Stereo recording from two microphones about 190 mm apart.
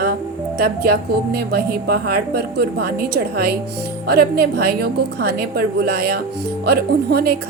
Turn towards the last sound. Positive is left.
turn(degrees=-55)  # may be behind; listen again after turning